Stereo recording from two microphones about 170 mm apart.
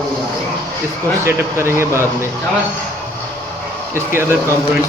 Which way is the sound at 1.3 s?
15° right (ahead or behind).